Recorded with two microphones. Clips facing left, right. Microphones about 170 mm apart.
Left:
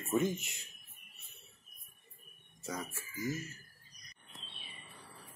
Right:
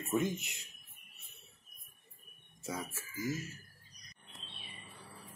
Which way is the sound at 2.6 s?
5° right (ahead or behind).